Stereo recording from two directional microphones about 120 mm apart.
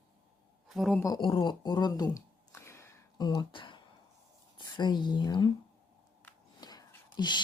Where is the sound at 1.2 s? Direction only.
45° left (ahead or behind).